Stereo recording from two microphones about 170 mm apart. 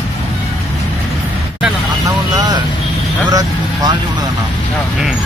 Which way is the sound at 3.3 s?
25° right (ahead or behind).